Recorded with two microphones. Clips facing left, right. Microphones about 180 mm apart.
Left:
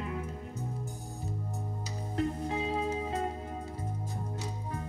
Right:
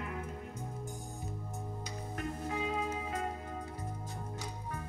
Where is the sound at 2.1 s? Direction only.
30° left (ahead or behind).